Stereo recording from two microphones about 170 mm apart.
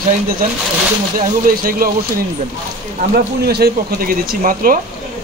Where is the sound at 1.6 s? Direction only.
60° right (ahead or behind).